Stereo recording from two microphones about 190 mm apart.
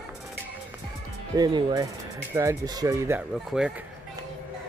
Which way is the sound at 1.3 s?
20° right (ahead or behind).